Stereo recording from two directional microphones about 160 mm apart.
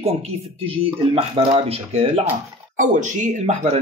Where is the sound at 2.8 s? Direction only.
50° right (ahead or behind).